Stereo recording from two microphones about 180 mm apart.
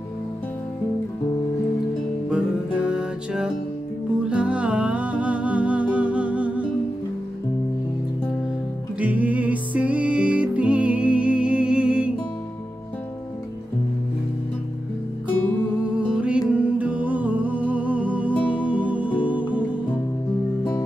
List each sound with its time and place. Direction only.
2.2 s music: 5° right (ahead or behind)
9.0 s music: 10° right (ahead or behind)
16.0 s music: 5° right (ahead or behind)
19.0 s music: 25° left (ahead or behind)